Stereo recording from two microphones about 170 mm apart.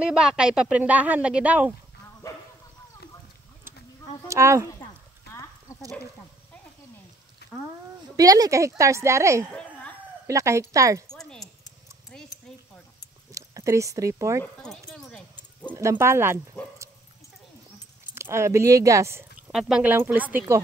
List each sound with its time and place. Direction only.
0.0 s a woman's voice: 5° right (ahead or behind)
4.3 s a woman's voice: 15° right (ahead or behind)
5.7 s a sound: 20° left (ahead or behind)
8.2 s a woman's voice: 20° right (ahead or behind)
9.5 s a sound: 5° left (ahead or behind)
10.2 s a woman's voice: 15° right (ahead or behind)
11.1 s a sound: 5° left (ahead or behind)
13.3 s speech: 20° right (ahead or behind)
14.4 s speech: 5° left (ahead or behind)
15.7 s a woman's voice: 15° right (ahead or behind)
18.1 s a woman's voice: 15° right (ahead or behind)